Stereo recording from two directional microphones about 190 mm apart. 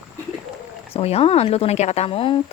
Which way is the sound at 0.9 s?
30° left (ahead or behind).